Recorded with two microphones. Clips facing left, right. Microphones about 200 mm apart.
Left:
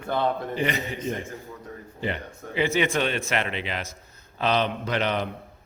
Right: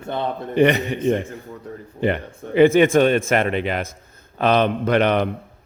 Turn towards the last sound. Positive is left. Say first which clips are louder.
# right 8 dB
turn(degrees=-60)  # may be behind; listen again after turning